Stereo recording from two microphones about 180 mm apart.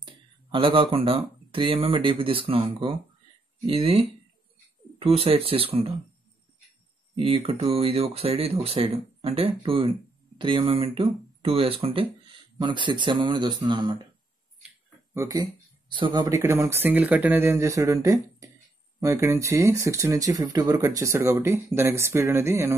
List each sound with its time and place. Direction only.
0.0 s speech: 25° right (ahead or behind)
7.2 s speech: 30° right (ahead or behind)
15.1 s speech: 20° right (ahead or behind)